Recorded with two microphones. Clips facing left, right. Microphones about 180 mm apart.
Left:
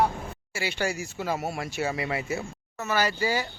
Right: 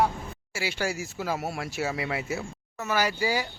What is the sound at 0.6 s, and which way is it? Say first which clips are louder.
Speech: left 1 dB; 5° right (ahead or behind).